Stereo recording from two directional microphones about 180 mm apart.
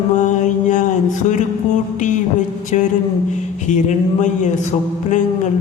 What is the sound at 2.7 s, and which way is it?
Speech, 40° left (ahead or behind).